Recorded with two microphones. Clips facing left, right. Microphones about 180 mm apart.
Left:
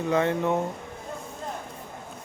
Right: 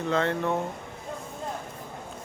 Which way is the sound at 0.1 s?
15° left (ahead or behind).